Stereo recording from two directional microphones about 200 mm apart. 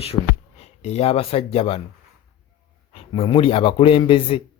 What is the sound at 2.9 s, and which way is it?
Speech, 25° left (ahead or behind).